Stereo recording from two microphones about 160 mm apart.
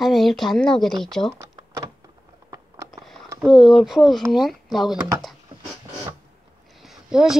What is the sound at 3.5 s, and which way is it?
Speech, 30° left (ahead or behind).